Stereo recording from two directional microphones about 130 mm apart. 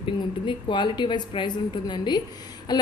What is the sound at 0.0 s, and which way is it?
A woman's voice, 40° left (ahead or behind).